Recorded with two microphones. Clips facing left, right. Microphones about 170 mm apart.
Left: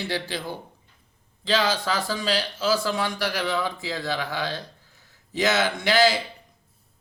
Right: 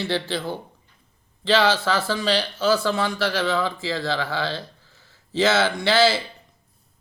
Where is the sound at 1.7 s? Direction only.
15° left (ahead or behind).